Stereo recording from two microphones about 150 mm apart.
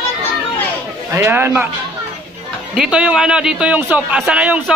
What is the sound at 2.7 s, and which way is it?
A man's voice, 5° right (ahead or behind).